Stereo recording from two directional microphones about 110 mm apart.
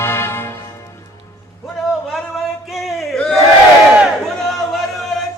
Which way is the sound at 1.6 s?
Centre (ahead or behind).